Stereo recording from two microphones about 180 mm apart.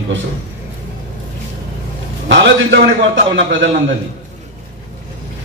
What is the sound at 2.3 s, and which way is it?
A man's voice, 80° right.